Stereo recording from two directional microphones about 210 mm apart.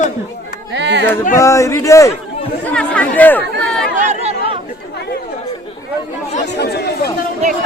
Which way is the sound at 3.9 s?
30° right (ahead or behind).